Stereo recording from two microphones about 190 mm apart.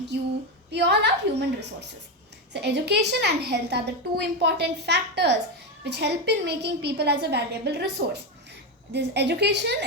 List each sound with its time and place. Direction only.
0.7 s a woman's voice: 60° right (ahead or behind)
2.5 s a woman's voice: 65° right (ahead or behind)